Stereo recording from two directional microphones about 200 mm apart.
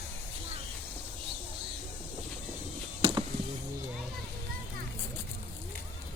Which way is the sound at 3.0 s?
25° right (ahead or behind).